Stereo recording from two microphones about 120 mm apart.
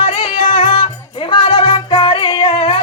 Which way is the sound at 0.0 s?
45° left (ahead or behind).